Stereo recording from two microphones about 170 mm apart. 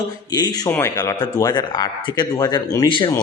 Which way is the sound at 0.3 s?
25° left (ahead or behind).